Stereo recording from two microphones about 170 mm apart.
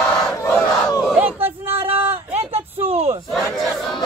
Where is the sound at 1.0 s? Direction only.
10° right (ahead or behind).